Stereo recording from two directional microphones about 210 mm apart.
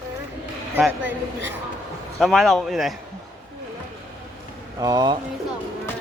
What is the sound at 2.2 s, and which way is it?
Mantra, centre (ahead or behind).